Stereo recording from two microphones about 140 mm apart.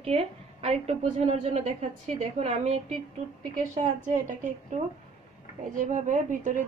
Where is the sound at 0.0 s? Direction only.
45° right (ahead or behind).